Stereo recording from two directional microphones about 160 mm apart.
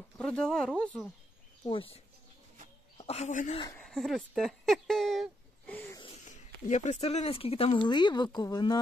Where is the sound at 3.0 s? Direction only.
40° left (ahead or behind).